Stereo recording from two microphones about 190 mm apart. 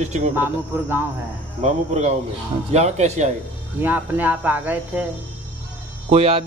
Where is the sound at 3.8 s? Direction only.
10° right (ahead or behind).